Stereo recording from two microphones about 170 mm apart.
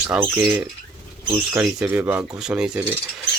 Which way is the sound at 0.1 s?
10° right (ahead or behind).